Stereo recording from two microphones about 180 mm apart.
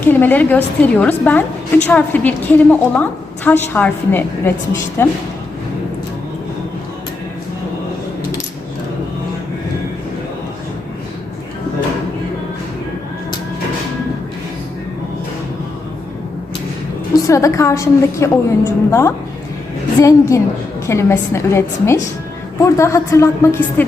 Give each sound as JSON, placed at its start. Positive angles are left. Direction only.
{"t": 0.0, "sound": "a woman's voice", "side_deg": 10}
{"t": 17.2, "sound": "a woman's voice", "side_deg": 15}